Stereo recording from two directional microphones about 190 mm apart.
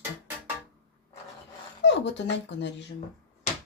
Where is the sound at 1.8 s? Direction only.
65° left (ahead or behind).